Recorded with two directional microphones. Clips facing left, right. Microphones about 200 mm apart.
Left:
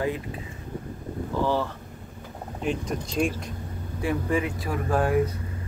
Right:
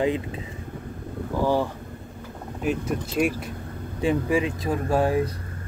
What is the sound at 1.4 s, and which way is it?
Speech, 15° right (ahead or behind).